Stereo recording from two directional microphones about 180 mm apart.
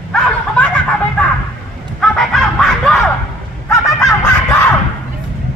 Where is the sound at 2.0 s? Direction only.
Centre (ahead or behind).